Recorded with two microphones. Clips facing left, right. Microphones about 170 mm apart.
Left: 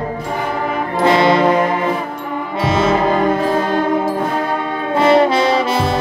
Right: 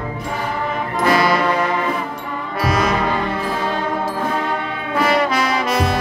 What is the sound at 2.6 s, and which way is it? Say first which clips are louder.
Music: left 4 dB; 25° left (ahead or behind).